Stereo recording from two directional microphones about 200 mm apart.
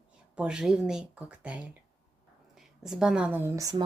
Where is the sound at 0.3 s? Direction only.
5° right (ahead or behind).